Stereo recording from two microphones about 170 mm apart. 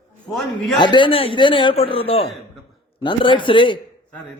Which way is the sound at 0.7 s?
30° left (ahead or behind).